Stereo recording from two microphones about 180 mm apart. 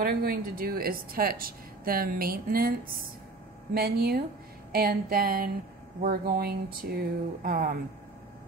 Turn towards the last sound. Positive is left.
turn(degrees=-55)  # may be behind; listen again after turning